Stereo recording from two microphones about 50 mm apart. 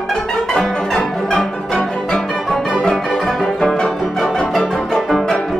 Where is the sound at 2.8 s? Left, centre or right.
Centre.